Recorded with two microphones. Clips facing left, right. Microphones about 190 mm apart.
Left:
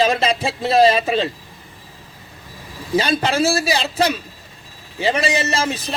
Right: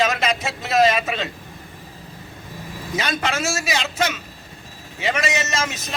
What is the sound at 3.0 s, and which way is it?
A man's voice, 30° left (ahead or behind).